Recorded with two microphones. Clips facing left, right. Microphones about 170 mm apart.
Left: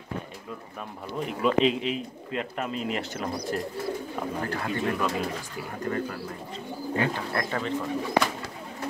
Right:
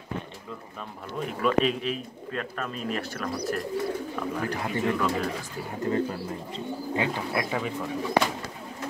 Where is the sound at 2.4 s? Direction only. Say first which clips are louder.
Left 2 dB; 20° left (ahead or behind).